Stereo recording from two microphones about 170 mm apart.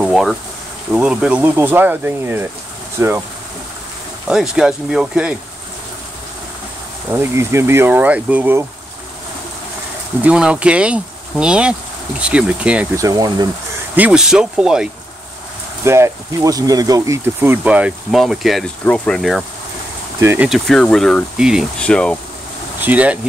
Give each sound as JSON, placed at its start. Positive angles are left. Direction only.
{"t": 0.0, "sound": "boiling", "side_deg": 0}
{"t": 0.9, "sound": "speech", "side_deg": -5}
{"t": 4.3, "sound": "speech", "side_deg": -5}
{"t": 7.1, "sound": "speech", "side_deg": -15}
{"t": 10.2, "sound": "speech", "side_deg": -5}
{"t": 12.9, "sound": "speech", "side_deg": -20}
{"t": 13.9, "sound": "speech", "side_deg": -5}
{"t": 15.8, "sound": "speech", "side_deg": -15}
{"t": 20.2, "sound": "speech", "side_deg": -15}
{"t": 20.4, "sound": "speech", "side_deg": 0}
{"t": 22.8, "sound": "speech", "side_deg": -10}